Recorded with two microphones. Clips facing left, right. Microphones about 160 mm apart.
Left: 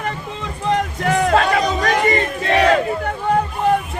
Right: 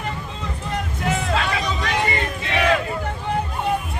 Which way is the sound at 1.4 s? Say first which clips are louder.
Left 7 dB; 45° left (ahead or behind).